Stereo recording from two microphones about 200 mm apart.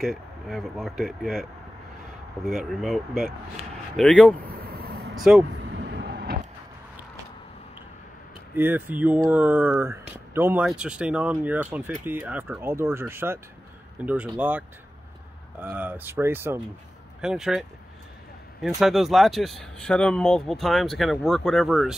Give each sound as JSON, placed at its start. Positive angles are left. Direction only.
{"t": 0.0, "sound": "speech", "side_deg": 0}
{"t": 4.4, "sound": "vehicle", "side_deg": -50}
{"t": 5.1, "sound": "speech", "side_deg": 0}
{"t": 5.5, "sound": "vehicle", "side_deg": -65}
{"t": 8.5, "sound": "speech", "side_deg": -10}
{"t": 15.6, "sound": "speech", "side_deg": -10}